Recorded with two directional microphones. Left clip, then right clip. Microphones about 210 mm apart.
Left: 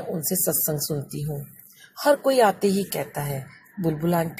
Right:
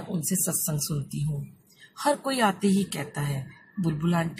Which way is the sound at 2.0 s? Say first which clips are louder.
Left 6 dB; 10° left (ahead or behind).